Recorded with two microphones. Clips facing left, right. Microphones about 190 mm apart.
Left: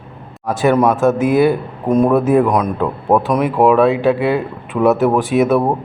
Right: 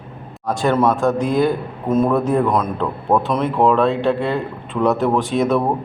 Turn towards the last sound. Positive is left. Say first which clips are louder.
# left 4 dB
turn(degrees=5)  # may be behind; listen again after turning